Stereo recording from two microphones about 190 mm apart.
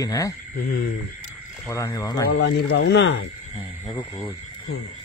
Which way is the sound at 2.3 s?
60° left (ahead or behind).